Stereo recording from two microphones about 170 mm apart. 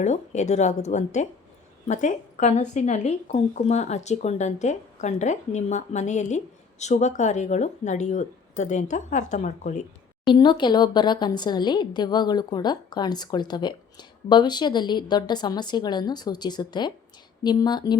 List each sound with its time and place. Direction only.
0.0 s a woman's voice: 45° left (ahead or behind)
10.3 s a woman's voice: 25° left (ahead or behind)